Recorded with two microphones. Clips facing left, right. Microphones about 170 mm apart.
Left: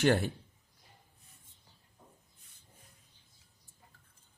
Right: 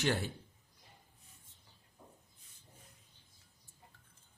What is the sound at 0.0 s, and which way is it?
Speech, 50° left (ahead or behind).